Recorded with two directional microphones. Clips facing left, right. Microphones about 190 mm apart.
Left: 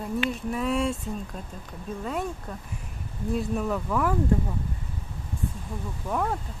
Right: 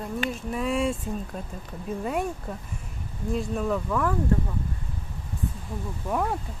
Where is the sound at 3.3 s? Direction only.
Centre (ahead or behind).